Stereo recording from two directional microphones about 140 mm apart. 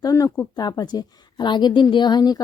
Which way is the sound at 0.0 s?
25° left (ahead or behind).